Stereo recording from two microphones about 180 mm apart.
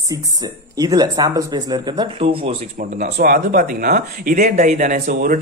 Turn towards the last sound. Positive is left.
turn(degrees=-45)  # may be behind; listen again after turning